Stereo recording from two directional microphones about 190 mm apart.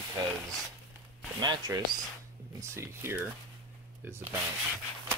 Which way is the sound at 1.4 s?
20° right (ahead or behind).